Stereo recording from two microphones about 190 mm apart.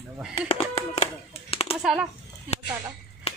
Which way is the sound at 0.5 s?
30° left (ahead or behind).